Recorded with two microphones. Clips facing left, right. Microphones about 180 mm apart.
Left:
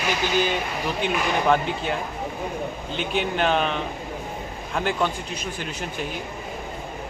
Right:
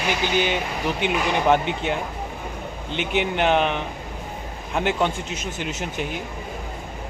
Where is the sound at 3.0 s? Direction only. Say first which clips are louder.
Right 2 dB; 70° right (ahead or behind).